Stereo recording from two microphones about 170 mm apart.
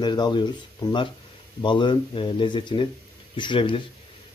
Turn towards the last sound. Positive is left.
turn(degrees=30)  # may be behind; listen again after turning